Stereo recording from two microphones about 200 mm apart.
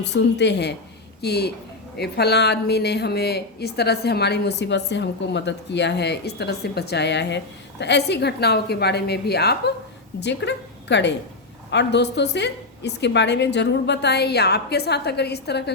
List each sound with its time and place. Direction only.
0.0 s a woman's voice: 60° left (ahead or behind)